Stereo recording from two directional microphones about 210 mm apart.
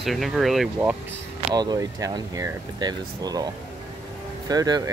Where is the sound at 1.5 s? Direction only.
20° right (ahead or behind).